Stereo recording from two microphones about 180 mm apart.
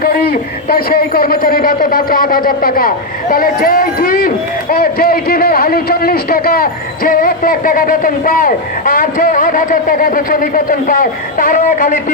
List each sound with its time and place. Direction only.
0.0 s speech: 55° left (ahead or behind)